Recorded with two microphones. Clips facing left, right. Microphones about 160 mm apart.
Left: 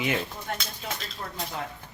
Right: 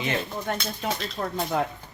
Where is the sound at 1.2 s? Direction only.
75° right (ahead or behind).